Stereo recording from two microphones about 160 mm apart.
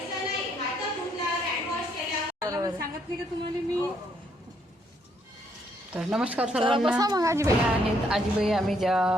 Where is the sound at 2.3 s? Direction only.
20° right (ahead or behind).